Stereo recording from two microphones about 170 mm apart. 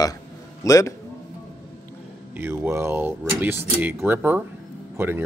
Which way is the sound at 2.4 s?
15° right (ahead or behind).